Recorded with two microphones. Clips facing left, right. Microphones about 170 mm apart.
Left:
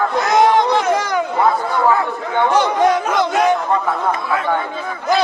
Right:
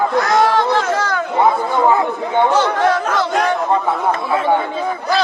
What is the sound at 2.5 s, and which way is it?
Chatter, 15° left (ahead or behind).